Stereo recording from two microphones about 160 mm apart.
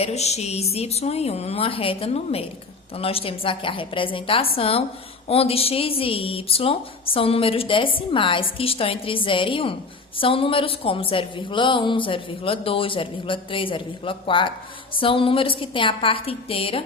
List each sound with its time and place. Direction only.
0.0 s a woman's voice: 45° left (ahead or behind)